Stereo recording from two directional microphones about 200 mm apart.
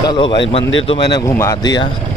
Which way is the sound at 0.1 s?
25° left (ahead or behind).